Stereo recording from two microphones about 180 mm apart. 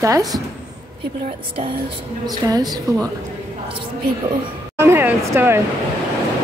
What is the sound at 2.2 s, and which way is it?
Speech, 20° right (ahead or behind).